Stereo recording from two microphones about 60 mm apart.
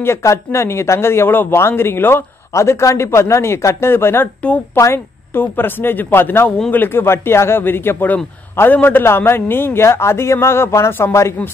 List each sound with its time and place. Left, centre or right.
0.2 s a man's voice: left
2.5 s a man's voice: left
4.7 s speech: left
5.3 s a man's voice: left